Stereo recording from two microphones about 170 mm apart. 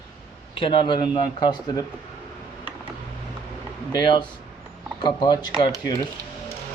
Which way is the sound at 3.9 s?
25° left (ahead or behind).